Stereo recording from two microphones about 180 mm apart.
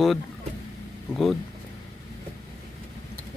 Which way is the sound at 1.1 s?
Centre (ahead or behind).